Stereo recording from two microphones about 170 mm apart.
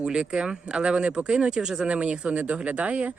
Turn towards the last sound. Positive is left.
turn(degrees=-10)  # may be behind; listen again after turning